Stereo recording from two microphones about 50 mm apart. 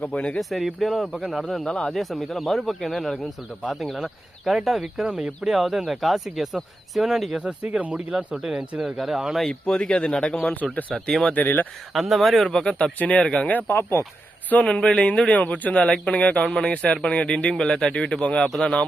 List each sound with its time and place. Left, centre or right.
0.1 s a man's voice: left
0.3 s speech: centre
7.4 s speech: right
8.4 s speech: centre
9.5 s a man's voice: centre
11.1 s speech: centre
11.3 s speech: left
11.9 s speech: centre
12.5 s speech: centre
13.0 s a man's voice: left
13.5 s speech: left
14.6 s a man's voice: centre
15.7 s a man's voice: left
16.5 s a man's voice: centre